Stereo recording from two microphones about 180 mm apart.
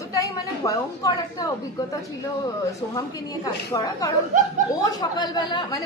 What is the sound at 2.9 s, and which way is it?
A woman's voice, 20° left (ahead or behind).